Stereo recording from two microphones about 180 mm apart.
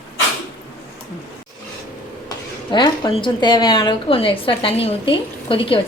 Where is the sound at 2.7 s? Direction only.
25° left (ahead or behind).